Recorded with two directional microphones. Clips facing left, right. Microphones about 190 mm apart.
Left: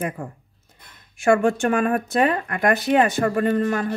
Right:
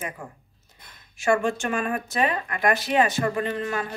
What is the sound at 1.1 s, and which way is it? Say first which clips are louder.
Speech: left 5 dB; 55° left (ahead or behind).